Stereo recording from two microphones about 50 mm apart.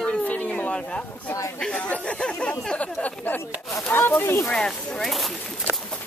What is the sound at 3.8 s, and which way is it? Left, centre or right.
Speech, left.